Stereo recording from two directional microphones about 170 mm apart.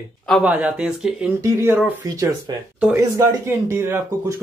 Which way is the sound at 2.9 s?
15° right (ahead or behind).